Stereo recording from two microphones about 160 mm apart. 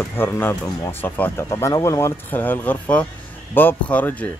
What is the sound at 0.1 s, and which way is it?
Speech, 15° left (ahead or behind).